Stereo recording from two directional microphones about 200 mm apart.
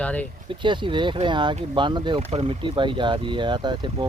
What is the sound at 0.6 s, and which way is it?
Speech, 25° right (ahead or behind).